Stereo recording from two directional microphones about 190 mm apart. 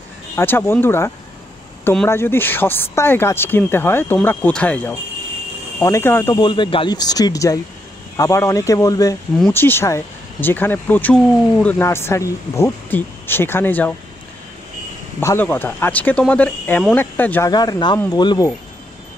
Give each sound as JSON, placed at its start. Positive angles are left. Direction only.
{"t": 0.4, "sound": "speech", "side_deg": 10}
{"t": 6.3, "sound": "speech", "side_deg": 25}
{"t": 15.1, "sound": "speech", "side_deg": 10}
{"t": 17.5, "sound": "speech", "side_deg": 20}